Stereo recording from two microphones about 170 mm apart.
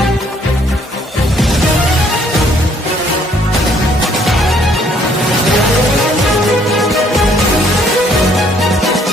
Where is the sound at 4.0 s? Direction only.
Centre (ahead or behind).